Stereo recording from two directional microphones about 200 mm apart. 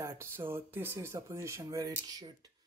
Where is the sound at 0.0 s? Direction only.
15° right (ahead or behind).